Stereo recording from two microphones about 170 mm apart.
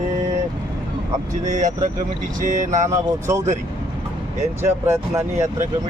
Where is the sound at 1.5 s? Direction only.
45° right (ahead or behind).